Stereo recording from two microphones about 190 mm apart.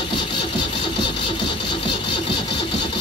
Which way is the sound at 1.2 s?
25° left (ahead or behind).